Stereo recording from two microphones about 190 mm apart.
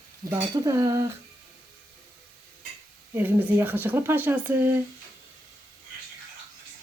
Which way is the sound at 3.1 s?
10° right (ahead or behind).